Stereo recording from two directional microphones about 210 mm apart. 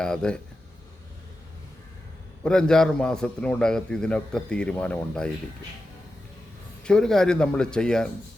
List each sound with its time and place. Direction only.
0.0 s a man's voice: 5° left (ahead or behind)
2.4 s a man's voice: 5° left (ahead or behind)
6.8 s a man's voice: 5° left (ahead or behind)